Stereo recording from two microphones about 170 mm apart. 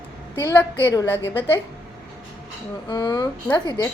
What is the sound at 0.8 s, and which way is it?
Speech, 20° left (ahead or behind).